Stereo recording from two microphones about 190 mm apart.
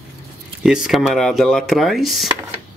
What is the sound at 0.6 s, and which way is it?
Speech, 5° right (ahead or behind).